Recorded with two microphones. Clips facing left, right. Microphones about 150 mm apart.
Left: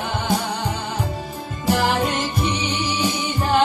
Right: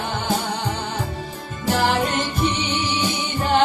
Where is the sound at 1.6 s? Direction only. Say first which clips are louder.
Even; 10° left (ahead or behind).